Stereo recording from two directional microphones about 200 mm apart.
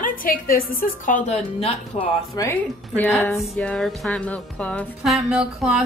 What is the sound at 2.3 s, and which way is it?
Speech, 15° left (ahead or behind).